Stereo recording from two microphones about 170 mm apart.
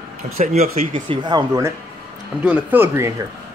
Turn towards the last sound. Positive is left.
turn(degrees=-15)  # may be behind; listen again after turning